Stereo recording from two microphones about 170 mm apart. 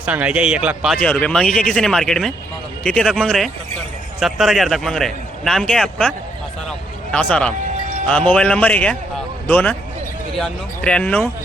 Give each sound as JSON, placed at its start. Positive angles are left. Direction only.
{"t": 0.0, "sound": "speech", "side_deg": -10}
{"t": 1.0, "sound": "a man's voice", "side_deg": 5}
{"t": 6.7, "sound": "a sound", "side_deg": 5}
{"t": 8.0, "sound": "a man's voice", "side_deg": 5}